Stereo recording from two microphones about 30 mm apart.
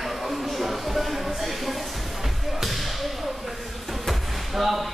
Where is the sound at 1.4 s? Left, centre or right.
Centre.